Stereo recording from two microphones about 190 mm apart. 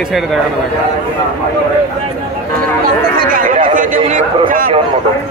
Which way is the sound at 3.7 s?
40° right (ahead or behind).